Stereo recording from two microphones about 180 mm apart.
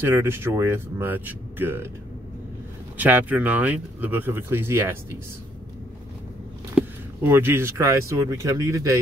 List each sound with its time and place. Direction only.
0.0 s speech: 15° right (ahead or behind)
3.0 s speech: 10° right (ahead or behind)
7.2 s speech: 10° right (ahead or behind)